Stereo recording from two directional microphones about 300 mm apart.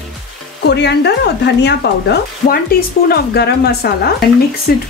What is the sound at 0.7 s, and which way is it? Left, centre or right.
Speech, left.